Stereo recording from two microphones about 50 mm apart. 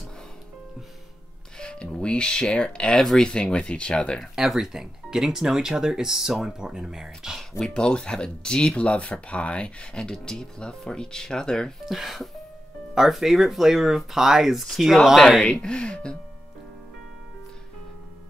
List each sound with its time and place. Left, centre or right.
1.6 s speech: centre
4.2 s speech: centre
7.6 s speech: centre
11.8 s speech: centre
15.4 s speech: centre